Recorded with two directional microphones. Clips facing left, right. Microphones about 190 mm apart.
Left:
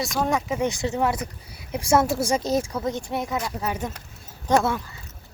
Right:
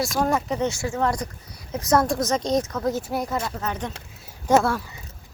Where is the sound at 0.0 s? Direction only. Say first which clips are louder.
Right 1 dB; centre (ahead or behind).